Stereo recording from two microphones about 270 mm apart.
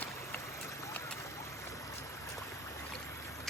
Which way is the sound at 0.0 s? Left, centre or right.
Centre.